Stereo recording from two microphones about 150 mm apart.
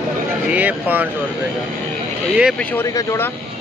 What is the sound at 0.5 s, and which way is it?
Speech, 10° right (ahead or behind).